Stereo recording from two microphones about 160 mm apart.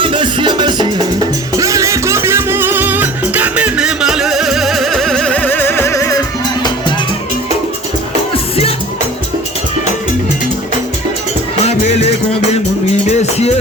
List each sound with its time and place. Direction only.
0.0 s music: 30° right (ahead or behind); by 6.9 s 25° left (ahead or behind)
8.3 s music: 40° left (ahead or behind)
11.6 s music: 40° left (ahead or behind)